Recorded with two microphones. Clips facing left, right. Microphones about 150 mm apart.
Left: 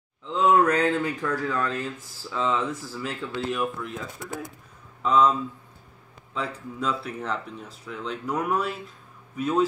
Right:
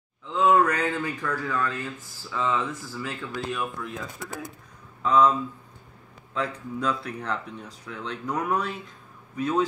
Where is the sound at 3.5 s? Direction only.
Centre (ahead or behind).